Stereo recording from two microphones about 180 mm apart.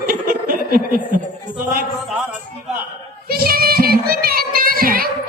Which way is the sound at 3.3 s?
55° right (ahead or behind).